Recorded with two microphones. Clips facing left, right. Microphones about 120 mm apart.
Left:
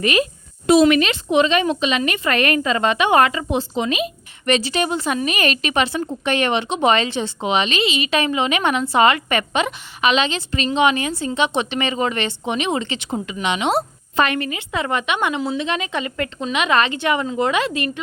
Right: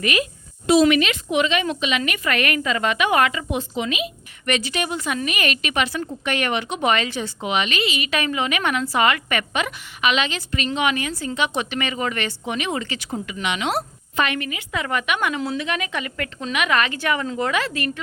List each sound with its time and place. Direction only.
0.0 s a woman's voice: 30° left (ahead or behind)
0.7 s a woman's voice: 50° left (ahead or behind); by 14.3 s 25° left (ahead or behind)
14.3 s speech: 35° left (ahead or behind); by 18.0 s 20° left (ahead or behind)